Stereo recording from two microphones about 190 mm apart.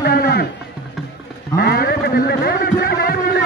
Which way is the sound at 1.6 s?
55° left (ahead or behind).